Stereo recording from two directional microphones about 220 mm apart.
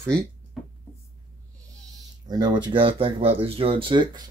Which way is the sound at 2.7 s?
25° right (ahead or behind).